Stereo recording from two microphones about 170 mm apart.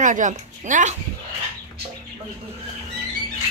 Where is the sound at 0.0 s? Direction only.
50° right (ahead or behind).